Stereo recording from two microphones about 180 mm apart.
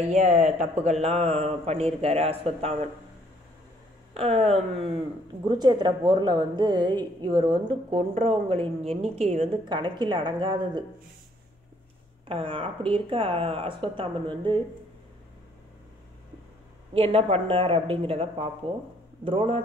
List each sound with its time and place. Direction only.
0.1 s speech: 40° right (ahead or behind)
4.1 s a woman's voice: 35° right (ahead or behind)
8.1 s a woman's voice: 35° right (ahead or behind)
12.3 s a woman's voice: 30° right (ahead or behind)
16.9 s speech: 35° right (ahead or behind)